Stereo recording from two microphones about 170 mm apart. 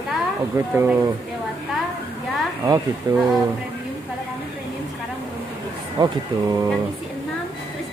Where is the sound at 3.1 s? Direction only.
25° right (ahead or behind).